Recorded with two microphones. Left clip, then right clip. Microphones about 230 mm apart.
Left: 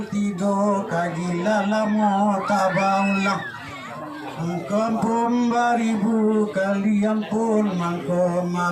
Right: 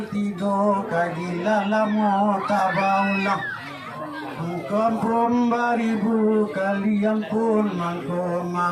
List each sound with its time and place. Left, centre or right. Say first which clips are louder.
0.4 s speech: right 1 dB; left
4.7 s speech: right 1 dB; left